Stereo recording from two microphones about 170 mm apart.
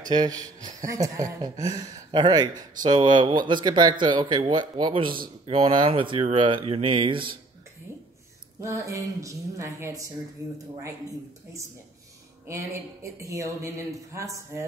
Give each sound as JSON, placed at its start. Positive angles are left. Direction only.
{"t": 0.1, "sound": "speech", "side_deg": -20}
{"t": 8.5, "sound": "speech", "side_deg": -20}
{"t": 13.2, "sound": "speech", "side_deg": -20}